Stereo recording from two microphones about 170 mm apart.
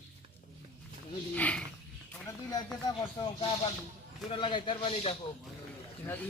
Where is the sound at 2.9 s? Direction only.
25° left (ahead or behind).